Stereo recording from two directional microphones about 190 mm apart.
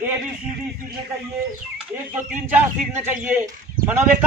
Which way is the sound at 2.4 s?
10° right (ahead or behind).